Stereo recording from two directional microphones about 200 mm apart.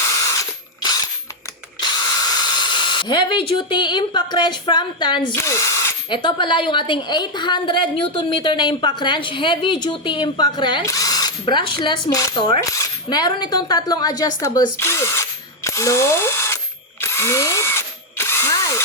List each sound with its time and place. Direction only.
2.2 s a woman's voice: 20° left (ahead or behind)
17.0 s drill: 15° left (ahead or behind)